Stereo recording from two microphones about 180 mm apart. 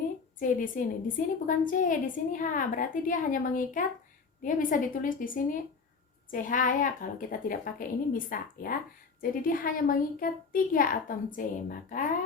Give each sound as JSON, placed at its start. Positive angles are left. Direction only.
{"t": 0.3, "sound": "a woman's voice", "side_deg": 50}